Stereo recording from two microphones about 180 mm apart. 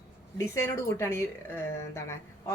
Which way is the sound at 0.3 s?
15° left (ahead or behind).